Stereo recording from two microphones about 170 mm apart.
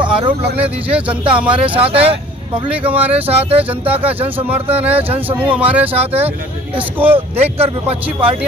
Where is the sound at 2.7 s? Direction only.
10° right (ahead or behind).